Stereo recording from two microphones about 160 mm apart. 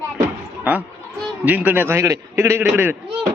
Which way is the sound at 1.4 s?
10° right (ahead or behind).